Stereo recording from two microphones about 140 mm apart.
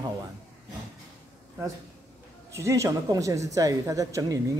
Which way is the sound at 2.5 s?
20° right (ahead or behind).